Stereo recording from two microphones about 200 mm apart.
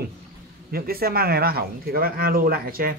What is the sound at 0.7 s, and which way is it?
Speech, 50° right (ahead or behind).